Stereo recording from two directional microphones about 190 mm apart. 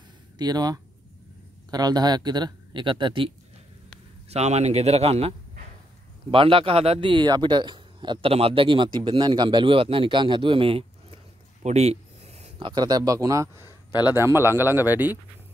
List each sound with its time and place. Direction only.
0.4 s a man's voice: 20° right (ahead or behind)
4.3 s a man's voice: 35° right (ahead or behind)
6.3 s a man's voice: 30° right (ahead or behind); by 15.1 s 10° right (ahead or behind)